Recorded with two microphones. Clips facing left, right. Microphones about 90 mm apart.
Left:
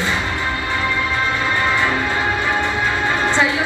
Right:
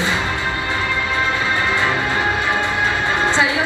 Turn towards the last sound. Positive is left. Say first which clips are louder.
# even
turn(degrees=-20)  # may be behind; listen again after turning